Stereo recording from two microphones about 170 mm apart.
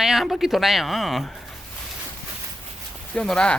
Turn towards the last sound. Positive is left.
turn(degrees=5)  # may be behind; listen again after turning